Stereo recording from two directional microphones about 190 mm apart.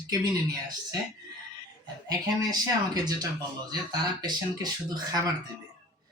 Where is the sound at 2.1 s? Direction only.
20° right (ahead or behind).